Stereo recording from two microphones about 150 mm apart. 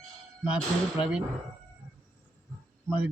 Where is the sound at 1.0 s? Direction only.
35° left (ahead or behind).